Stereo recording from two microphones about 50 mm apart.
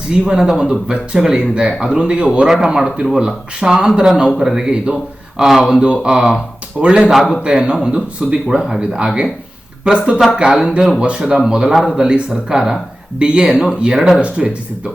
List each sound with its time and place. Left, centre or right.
0.1 s speech: centre